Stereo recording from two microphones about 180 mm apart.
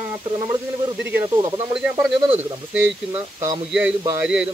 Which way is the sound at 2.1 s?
30° right (ahead or behind).